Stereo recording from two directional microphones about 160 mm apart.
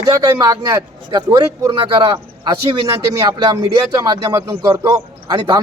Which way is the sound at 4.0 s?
25° right (ahead or behind).